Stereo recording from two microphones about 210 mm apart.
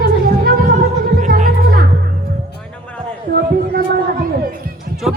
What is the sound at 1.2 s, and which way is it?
Music, 40° right (ahead or behind).